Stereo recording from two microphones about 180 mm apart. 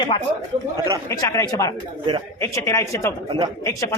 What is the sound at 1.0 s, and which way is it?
Speech, 15° left (ahead or behind).